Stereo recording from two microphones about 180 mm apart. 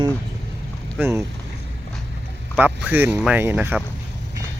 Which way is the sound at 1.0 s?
15° right (ahead or behind).